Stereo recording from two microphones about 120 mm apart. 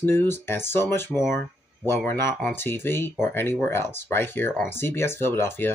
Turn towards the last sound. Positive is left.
turn(degrees=20)  # may be behind; listen again after turning